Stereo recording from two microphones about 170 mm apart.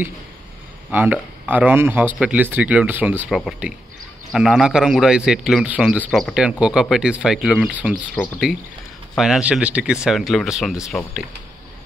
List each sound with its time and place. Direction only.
0.9 s a man's voice: 10° right (ahead or behind)